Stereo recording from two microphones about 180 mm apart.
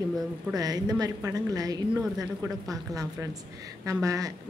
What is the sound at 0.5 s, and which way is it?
A woman's voice, 20° right (ahead or behind).